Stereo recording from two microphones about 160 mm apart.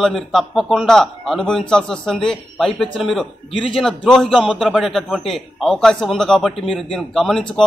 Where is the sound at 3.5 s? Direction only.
35° left (ahead or behind).